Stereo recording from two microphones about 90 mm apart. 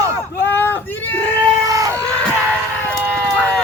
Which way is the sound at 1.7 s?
40° right (ahead or behind).